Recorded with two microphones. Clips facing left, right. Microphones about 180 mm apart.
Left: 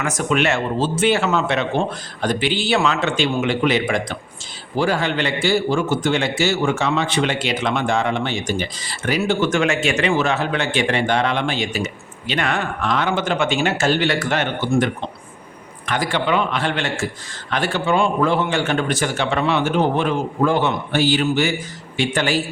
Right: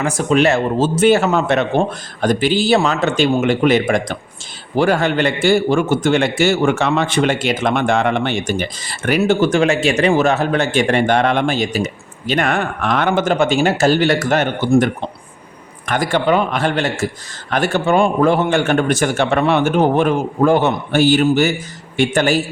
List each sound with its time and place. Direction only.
0.0 s a man's voice: 30° right (ahead or behind); by 9.5 s 45° right (ahead or behind)
9.5 s a man's voice: 35° right (ahead or behind)
15.9 s a man's voice: 45° right (ahead or behind)